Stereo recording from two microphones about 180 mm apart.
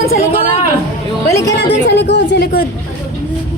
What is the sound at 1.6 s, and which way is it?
A woman's voice, 70° left (ahead or behind).